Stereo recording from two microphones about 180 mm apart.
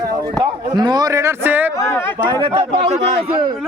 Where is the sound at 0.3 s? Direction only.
25° right (ahead or behind).